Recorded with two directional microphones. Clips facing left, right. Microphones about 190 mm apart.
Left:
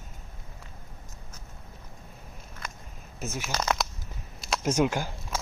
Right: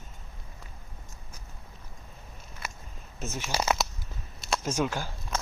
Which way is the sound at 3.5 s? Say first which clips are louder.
Right 1 dB; 5° right (ahead or behind).